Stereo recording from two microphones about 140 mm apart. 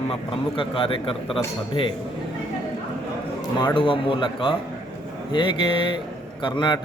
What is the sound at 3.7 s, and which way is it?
Speech, 40° left (ahead or behind).